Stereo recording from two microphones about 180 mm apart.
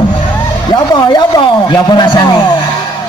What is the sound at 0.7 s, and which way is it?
A man's voice, 25° left (ahead or behind).